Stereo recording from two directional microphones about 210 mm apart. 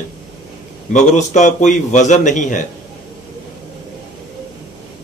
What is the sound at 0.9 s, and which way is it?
A man's voice, 35° left (ahead or behind).